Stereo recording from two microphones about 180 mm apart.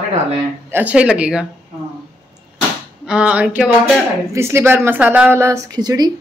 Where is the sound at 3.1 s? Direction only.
5° right (ahead or behind).